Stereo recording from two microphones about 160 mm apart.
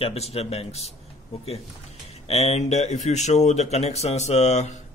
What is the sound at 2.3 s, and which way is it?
Speech, 40° left (ahead or behind).